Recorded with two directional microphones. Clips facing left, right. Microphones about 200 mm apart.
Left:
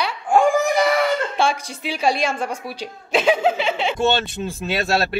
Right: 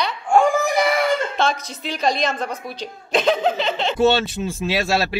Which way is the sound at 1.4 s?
10° left (ahead or behind).